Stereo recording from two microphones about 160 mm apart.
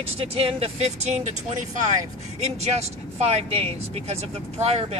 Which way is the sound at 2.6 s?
40° right (ahead or behind).